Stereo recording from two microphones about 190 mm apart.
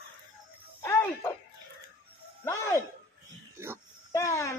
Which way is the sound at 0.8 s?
15° left (ahead or behind).